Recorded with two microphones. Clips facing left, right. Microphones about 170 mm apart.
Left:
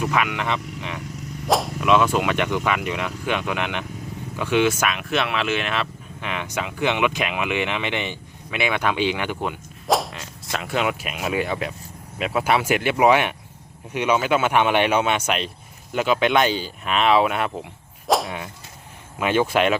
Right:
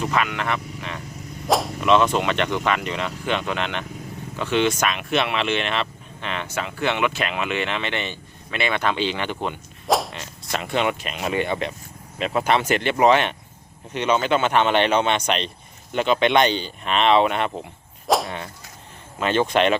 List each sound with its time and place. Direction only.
0.0 s speech: 10° left (ahead or behind)
1.5 s speech: centre (ahead or behind)
18.1 s whip: centre (ahead or behind)
19.2 s speech: 10° left (ahead or behind)